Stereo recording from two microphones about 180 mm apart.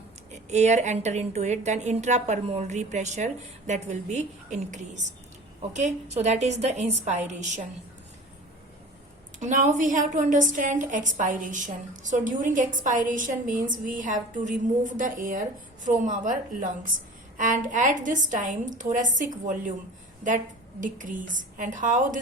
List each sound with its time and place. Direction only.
0.5 s a woman's voice: 40° right (ahead or behind)
9.4 s a woman's voice: 45° right (ahead or behind)
20.8 s a woman's voice: 45° right (ahead or behind)